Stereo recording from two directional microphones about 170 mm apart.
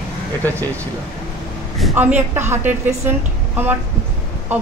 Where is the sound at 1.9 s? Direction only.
10° right (ahead or behind).